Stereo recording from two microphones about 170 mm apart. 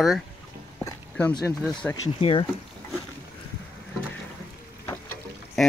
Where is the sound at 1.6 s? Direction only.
5° left (ahead or behind).